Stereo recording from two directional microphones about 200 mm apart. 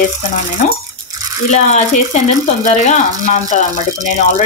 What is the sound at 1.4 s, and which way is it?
Speech, 35° left (ahead or behind).